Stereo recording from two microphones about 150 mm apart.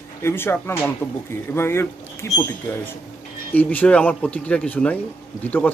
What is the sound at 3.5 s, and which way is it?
Speech, 10° left (ahead or behind).